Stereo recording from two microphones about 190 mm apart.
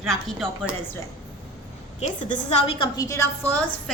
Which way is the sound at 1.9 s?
40° left (ahead or behind).